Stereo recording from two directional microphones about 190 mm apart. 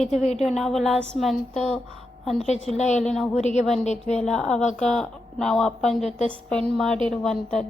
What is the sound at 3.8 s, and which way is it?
Speech, 35° left (ahead or behind).